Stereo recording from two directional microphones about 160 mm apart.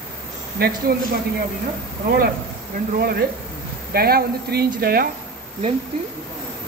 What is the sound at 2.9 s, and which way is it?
Speech, 70° right (ahead or behind).